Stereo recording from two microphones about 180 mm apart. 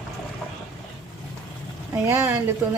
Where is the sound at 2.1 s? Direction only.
15° right (ahead or behind).